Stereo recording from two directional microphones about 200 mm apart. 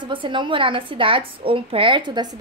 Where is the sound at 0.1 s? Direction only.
25° right (ahead or behind).